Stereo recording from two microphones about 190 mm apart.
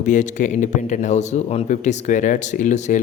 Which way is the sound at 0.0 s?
40° left (ahead or behind).